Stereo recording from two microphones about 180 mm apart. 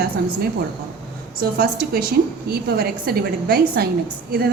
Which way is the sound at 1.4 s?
55° right (ahead or behind).